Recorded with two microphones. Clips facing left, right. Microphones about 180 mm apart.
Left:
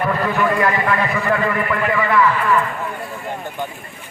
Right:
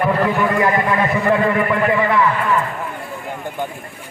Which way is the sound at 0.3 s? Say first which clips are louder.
Right 1 dB; 20° right (ahead or behind).